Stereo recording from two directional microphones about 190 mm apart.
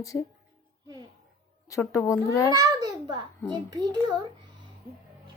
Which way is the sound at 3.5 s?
20° right (ahead or behind).